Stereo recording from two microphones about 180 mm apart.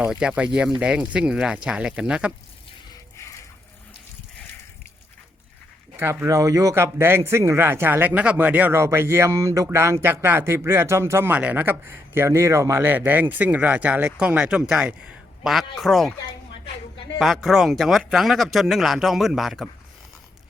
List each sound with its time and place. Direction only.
0.0 s speech: 5° right (ahead or behind)
6.0 s speech: 15° right (ahead or behind)
17.2 s speech: centre (ahead or behind)